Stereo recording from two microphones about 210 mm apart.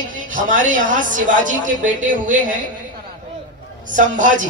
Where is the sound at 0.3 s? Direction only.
40° right (ahead or behind).